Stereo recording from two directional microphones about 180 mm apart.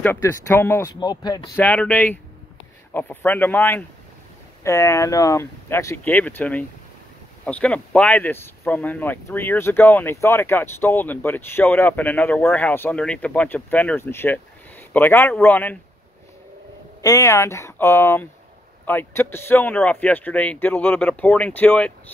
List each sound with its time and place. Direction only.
0.0 s speech: 15° left (ahead or behind)
1.6 s speech: 5° left (ahead or behind)
17.0 s speech: 20° left (ahead or behind)